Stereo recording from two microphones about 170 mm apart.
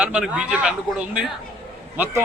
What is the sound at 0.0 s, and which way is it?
A man's voice, 5° right (ahead or behind).